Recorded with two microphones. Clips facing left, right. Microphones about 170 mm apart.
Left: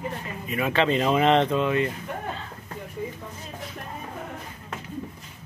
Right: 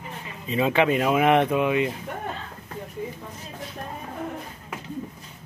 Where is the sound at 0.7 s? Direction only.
10° right (ahead or behind).